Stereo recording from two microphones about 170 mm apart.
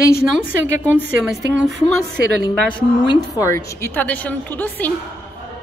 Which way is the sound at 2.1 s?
75° right (ahead or behind).